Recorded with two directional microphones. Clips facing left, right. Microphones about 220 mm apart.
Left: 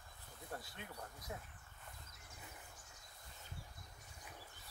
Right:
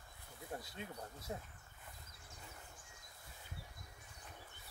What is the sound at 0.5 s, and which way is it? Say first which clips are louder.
Speech: right 3 dB; 20° right (ahead or behind).